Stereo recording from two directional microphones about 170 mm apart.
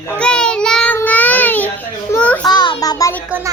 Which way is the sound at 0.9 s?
10° left (ahead or behind).